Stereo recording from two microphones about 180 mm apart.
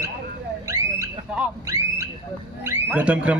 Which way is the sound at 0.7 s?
15° right (ahead or behind).